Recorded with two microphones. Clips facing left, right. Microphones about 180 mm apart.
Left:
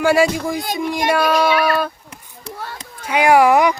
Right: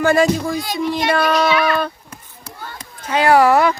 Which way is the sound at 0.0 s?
10° left (ahead or behind).